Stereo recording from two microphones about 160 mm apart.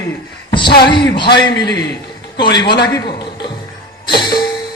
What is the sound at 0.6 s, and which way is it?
Speech, 80° left.